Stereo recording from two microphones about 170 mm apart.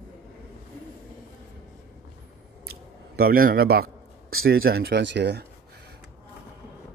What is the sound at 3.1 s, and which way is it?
A man's voice, 60° right (ahead or behind).